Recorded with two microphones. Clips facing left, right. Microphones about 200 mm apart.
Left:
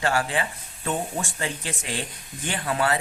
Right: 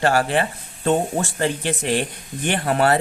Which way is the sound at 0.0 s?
65° right (ahead or behind).